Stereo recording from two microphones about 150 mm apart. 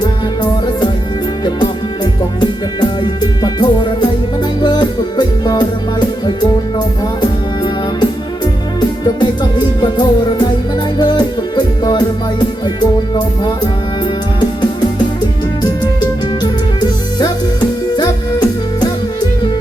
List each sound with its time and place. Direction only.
1.5 s music: 30° left (ahead or behind)
15.6 s music: 30° left (ahead or behind)